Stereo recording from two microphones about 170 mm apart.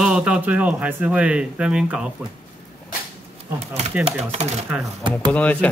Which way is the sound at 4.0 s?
40° right (ahead or behind).